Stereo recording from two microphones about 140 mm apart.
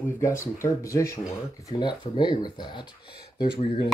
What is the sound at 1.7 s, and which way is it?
Speech, 35° left (ahead or behind).